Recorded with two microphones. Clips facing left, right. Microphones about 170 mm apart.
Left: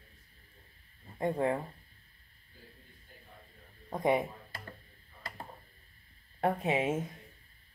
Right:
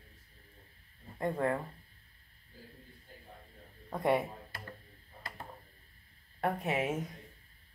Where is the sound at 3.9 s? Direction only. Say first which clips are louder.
Left 1 dB; 15° left (ahead or behind).